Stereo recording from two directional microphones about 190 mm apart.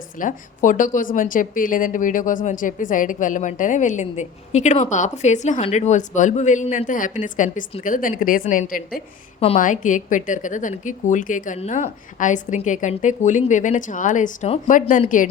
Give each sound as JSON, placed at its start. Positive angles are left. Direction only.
{"t": 0.2, "sound": "a woman's voice", "side_deg": 45}